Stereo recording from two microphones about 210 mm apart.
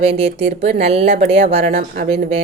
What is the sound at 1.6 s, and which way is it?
Speech, 45° right (ahead or behind).